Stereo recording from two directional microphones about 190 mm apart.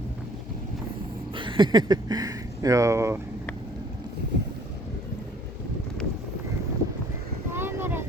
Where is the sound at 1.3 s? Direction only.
25° right (ahead or behind).